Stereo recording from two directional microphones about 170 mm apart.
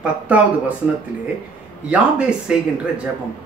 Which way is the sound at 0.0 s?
10° right (ahead or behind).